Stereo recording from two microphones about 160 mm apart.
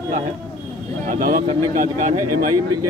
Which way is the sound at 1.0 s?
55° right (ahead or behind).